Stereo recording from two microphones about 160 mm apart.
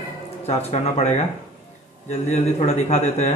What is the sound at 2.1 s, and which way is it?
Speech, 40° left (ahead or behind).